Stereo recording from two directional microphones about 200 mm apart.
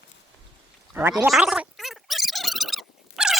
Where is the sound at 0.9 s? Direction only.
10° right (ahead or behind).